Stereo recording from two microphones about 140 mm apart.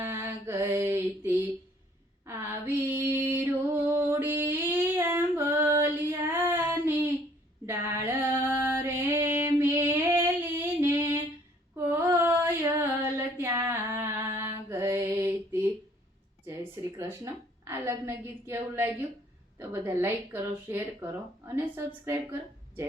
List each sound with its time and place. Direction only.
0.0 s mantra: 15° right (ahead or behind)
2.2 s female singing: 20° right (ahead or behind)
5.7 s child singing: 20° right (ahead or behind)
7.7 s female singing: 15° right (ahead or behind)
16.5 s a sound: 20° right (ahead or behind)
19.5 s a woman's voice: 15° right (ahead or behind)